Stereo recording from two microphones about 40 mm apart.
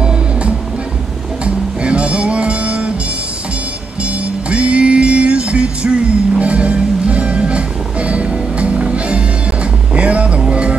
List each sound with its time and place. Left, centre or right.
0.0 s music: right
4.0 s music: right